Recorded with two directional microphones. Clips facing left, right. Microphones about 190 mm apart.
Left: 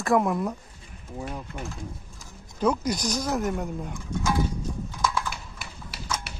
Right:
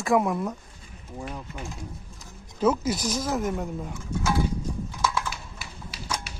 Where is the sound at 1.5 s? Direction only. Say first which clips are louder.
Left 2 dB; 10° left (ahead or behind).